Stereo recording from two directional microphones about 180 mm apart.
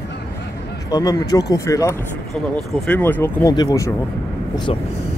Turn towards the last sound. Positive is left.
turn(degrees=35)  # may be behind; listen again after turning